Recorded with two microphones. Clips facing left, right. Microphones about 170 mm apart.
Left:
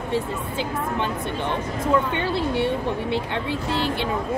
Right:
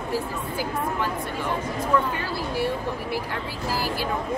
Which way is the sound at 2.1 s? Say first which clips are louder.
Left 5 dB; 25° left (ahead or behind).